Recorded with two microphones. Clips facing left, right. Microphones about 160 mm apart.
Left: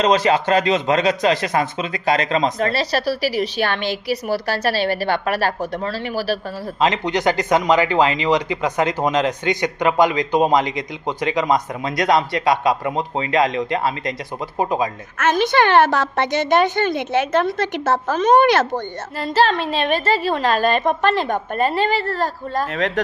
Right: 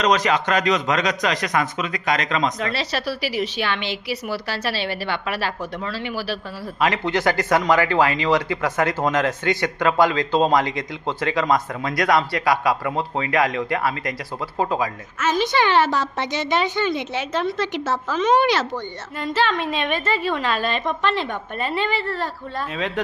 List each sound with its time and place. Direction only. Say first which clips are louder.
0.0 s a woman's voice: left 3 dB; 30° left (ahead or behind)
6.7 s speech: left 2 dB; 20° left (ahead or behind)
15.2 s a woman's voice: left 3 dB; 55° left (ahead or behind)
19.2 s a woman's voice: left 4 dB; 35° left (ahead or behind)